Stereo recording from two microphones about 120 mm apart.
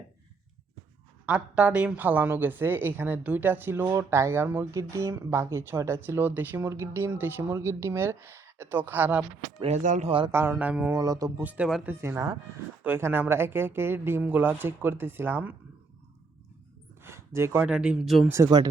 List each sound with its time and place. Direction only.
1.3 s a woman's voice: 10° right (ahead or behind)
9.6 s speech: 80° right
10.1 s speech: 45° right (ahead or behind)
10.3 s a woman's voice: 15° right (ahead or behind)
10.9 s speech: 30° right (ahead or behind)
11.4 s a woman's voice: 10° right (ahead or behind)
17.0 s a sound: 20° right (ahead or behind)
17.7 s a woman's voice: 10° right (ahead or behind)
18.3 s speech: 25° right (ahead or behind)